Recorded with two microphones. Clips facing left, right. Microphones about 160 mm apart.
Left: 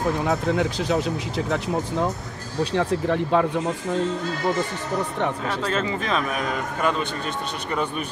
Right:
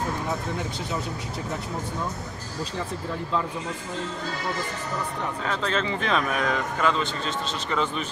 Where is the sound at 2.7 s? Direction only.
75° left (ahead or behind).